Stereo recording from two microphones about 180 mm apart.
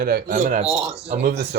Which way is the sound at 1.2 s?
65° right (ahead or behind).